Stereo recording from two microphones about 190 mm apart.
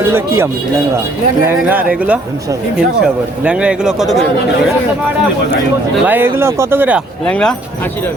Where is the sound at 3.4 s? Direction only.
5° right (ahead or behind).